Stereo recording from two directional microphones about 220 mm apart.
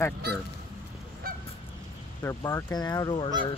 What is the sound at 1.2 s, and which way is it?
Honk, 40° right (ahead or behind).